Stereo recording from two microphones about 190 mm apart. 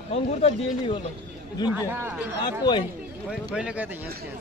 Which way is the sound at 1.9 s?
10° right (ahead or behind).